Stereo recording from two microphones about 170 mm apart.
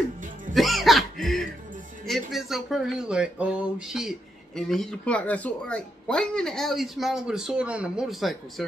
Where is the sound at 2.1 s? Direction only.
Centre (ahead or behind).